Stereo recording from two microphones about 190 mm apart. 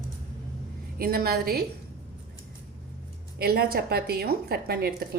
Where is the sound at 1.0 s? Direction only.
50° right (ahead or behind).